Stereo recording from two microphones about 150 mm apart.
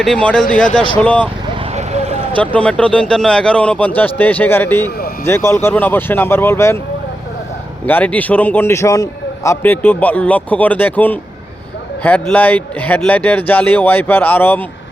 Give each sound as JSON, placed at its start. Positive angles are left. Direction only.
{"t": 0.0, "sound": "a man's voice", "side_deg": 5}
{"t": 1.7, "sound": "vehicle", "side_deg": -50}
{"t": 2.4, "sound": "a man's voice", "side_deg": 10}
{"t": 7.9, "sound": "a man's voice", "side_deg": 10}